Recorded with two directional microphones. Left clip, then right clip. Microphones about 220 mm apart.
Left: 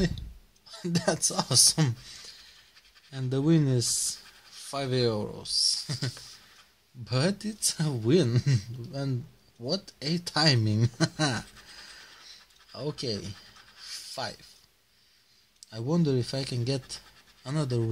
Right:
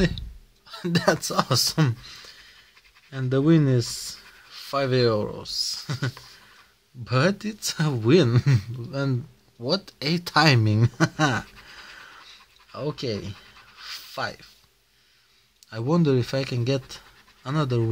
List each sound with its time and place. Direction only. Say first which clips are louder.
0.7 s speech: right 7 dB; 20° right (ahead or behind)
3.1 s speech: right 6 dB; 15° right (ahead or behind)
13.8 s a sound: right 5 dB; 15° right (ahead or behind)
15.7 s speech: right 6 dB; 20° right (ahead or behind)